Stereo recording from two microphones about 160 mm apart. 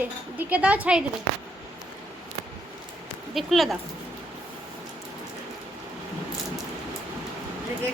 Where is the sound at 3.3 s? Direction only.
Centre (ahead or behind).